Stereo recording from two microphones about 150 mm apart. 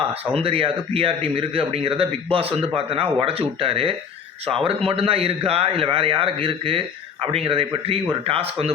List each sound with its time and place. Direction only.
0.3 s a man's voice: 40° right (ahead or behind)